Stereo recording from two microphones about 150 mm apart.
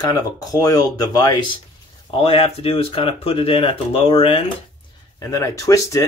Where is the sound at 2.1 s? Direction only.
40° left (ahead or behind).